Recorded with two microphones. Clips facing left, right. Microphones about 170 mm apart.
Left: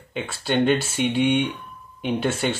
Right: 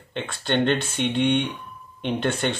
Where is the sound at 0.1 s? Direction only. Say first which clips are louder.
Left 1 dB; 5° left (ahead or behind).